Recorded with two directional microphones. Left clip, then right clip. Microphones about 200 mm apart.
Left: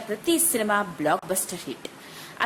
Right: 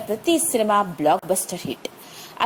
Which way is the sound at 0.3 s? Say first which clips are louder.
Right 4 dB; 20° right (ahead or behind).